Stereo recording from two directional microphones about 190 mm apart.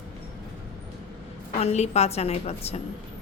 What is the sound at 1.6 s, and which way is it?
Speech, 35° left (ahead or behind).